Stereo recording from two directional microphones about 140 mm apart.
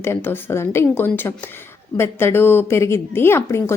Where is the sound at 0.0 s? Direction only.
15° left (ahead or behind).